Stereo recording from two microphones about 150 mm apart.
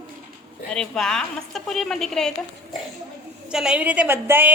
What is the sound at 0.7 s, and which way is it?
A woman's voice, 5° left (ahead or behind).